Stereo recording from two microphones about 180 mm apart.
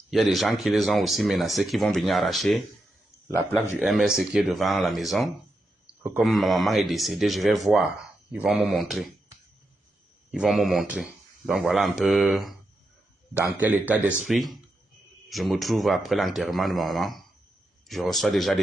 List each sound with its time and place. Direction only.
0.1 s speech: centre (ahead or behind)
3.3 s speech: 15° left (ahead or behind)
3.8 s speech: centre (ahead or behind)
10.3 s a man's voice: centre (ahead or behind)